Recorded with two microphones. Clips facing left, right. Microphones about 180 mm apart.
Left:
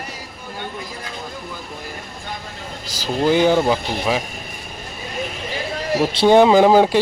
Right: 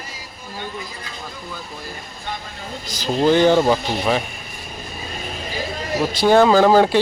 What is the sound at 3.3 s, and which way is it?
Speech, 10° left (ahead or behind).